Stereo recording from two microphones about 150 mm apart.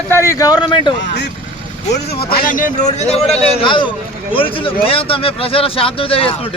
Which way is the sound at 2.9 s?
45° left (ahead or behind).